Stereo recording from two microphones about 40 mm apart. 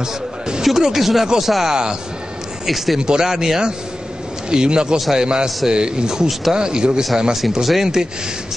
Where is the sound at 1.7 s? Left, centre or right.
Centre.